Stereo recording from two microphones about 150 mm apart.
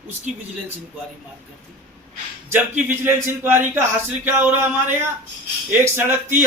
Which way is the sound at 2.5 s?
15° right (ahead or behind).